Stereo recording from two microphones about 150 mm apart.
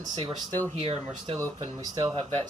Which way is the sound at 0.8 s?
40° right (ahead or behind).